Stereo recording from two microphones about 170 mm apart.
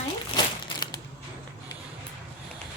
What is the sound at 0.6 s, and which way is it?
Crushing, 25° left (ahead or behind).